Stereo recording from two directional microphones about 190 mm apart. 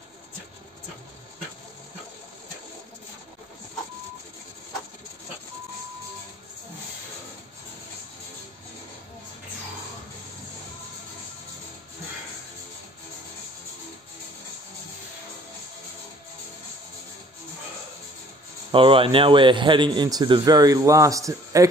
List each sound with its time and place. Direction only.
18.7 s a man's voice: 25° right (ahead or behind)